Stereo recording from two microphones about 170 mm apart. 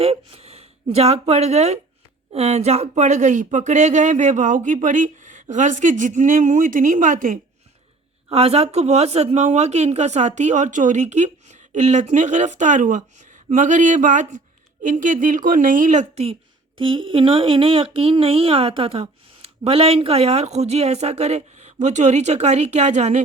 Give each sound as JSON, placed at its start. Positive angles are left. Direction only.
{"t": 0.0, "sound": "speech", "side_deg": -35}
{"t": 8.3, "sound": "a woman's voice", "side_deg": -35}